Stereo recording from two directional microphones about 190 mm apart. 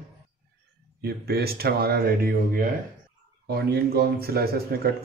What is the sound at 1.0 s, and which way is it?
A man's voice, 55° right (ahead or behind).